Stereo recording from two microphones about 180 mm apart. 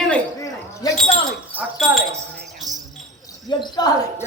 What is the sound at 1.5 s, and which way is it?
Speech, 5° right (ahead or behind).